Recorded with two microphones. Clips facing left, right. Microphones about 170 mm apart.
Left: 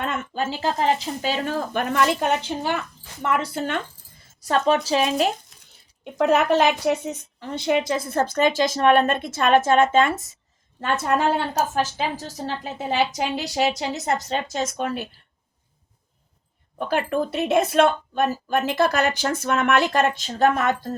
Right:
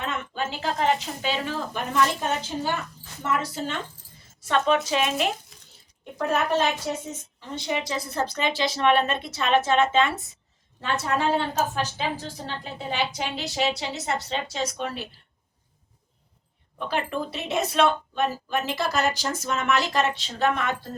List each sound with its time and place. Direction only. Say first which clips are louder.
0.0 s a woman's voice: left 4 dB; 45° left (ahead or behind); by 2.7 s 65° left (ahead or behind)
3.2 s speech: left 3 dB; 75° left (ahead or behind)
4.4 s speech: left 2 dB; 40° left (ahead or behind)
5.5 s a sound: right 3 dB; centre (ahead or behind)
6.1 s a woman's voice: left 6 dB; 80° left; by 15.0 s 45° left (ahead or behind)
16.7 s a woman's voice: left 5 dB; 50° left (ahead or behind)